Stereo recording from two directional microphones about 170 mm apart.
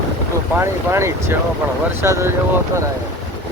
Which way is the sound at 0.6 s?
15° right (ahead or behind).